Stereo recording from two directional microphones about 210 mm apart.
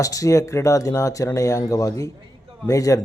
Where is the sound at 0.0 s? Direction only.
15° left (ahead or behind).